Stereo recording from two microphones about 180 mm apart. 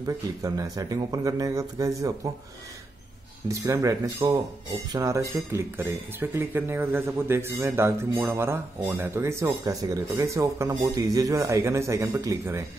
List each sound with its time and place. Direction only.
0.0 s a man's voice: 20° right (ahead or behind)
3.4 s speech: 15° right (ahead or behind)